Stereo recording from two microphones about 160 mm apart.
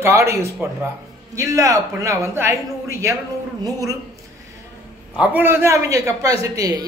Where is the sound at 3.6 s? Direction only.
20° right (ahead or behind).